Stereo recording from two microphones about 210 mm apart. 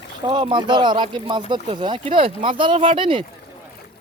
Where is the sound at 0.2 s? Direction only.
25° right (ahead or behind).